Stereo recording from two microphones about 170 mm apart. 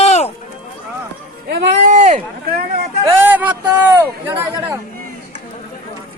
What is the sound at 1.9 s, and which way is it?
Speech, 50° right (ahead or behind).